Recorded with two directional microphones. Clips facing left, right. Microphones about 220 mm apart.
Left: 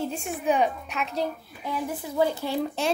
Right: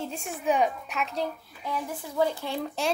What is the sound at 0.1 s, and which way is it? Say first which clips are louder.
Speech: left 2 dB; centre (ahead or behind).